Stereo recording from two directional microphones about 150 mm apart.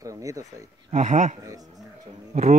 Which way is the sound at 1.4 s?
25° right (ahead or behind).